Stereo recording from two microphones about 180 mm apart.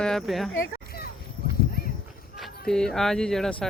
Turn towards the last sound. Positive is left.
turn(degrees=0)  # may be behind; listen again after turning